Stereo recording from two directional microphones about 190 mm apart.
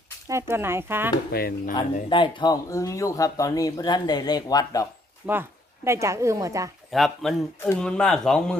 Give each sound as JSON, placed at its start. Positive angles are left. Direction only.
{"t": 0.3, "sound": "speech", "side_deg": -15}
{"t": 1.3, "sound": "speech", "side_deg": 50}
{"t": 2.0, "sound": "speech", "side_deg": 25}
{"t": 5.2, "sound": "speech", "side_deg": -10}
{"t": 6.9, "sound": "speech", "side_deg": 0}